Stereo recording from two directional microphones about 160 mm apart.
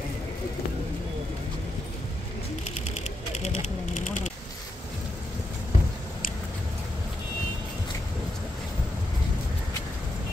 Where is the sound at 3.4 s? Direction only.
45° left (ahead or behind).